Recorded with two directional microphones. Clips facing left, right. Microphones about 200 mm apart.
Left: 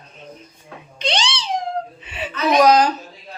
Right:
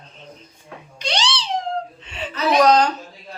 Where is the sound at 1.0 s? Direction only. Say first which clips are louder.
Left 1 dB; 20° left (ahead or behind).